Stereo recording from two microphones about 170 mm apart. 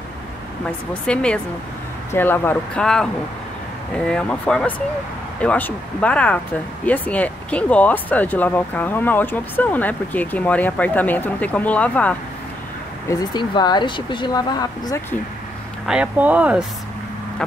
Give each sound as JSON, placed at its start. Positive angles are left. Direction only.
{"t": 1.0, "sound": "speech", "side_deg": 5}
{"t": 13.1, "sound": "speech", "side_deg": 25}
{"t": 15.9, "sound": "speech", "side_deg": -5}